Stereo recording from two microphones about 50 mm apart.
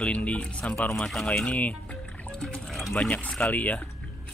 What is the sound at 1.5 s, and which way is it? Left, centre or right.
Music, left.